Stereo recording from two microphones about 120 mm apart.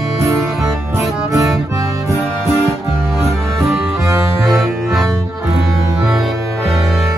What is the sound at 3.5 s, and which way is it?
Music, centre (ahead or behind).